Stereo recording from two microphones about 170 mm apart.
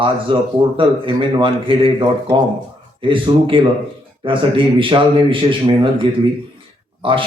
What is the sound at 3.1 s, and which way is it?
A man's voice, 30° right (ahead or behind).